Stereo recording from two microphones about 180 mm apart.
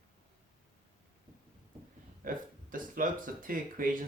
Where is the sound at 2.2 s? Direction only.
50° right (ahead or behind).